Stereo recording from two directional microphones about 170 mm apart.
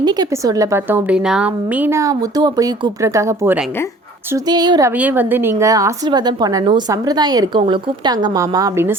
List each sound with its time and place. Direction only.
0.0 s a woman's voice: 25° right (ahead or behind)
4.9 s a woman's voice: 10° right (ahead or behind)